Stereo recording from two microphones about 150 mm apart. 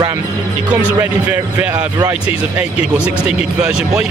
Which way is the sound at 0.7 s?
10° right (ahead or behind).